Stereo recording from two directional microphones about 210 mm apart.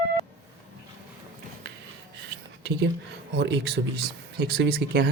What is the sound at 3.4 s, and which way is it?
Speech, 50° right (ahead or behind).